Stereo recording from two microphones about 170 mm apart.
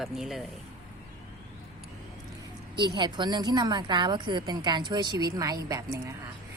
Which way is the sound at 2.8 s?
25° right (ahead or behind).